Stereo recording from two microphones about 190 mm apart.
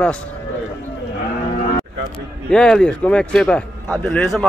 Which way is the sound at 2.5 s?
5° left (ahead or behind).